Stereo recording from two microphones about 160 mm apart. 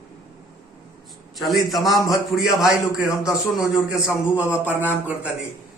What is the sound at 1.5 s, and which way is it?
A man's voice, centre (ahead or behind).